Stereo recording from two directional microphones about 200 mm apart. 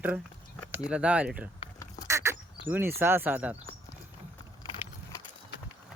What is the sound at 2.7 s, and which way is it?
Speech, 10° right (ahead or behind).